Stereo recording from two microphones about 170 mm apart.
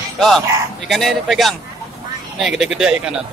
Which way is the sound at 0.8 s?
Centre (ahead or behind).